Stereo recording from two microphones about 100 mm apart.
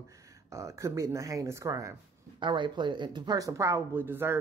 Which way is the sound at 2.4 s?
55° right (ahead or behind).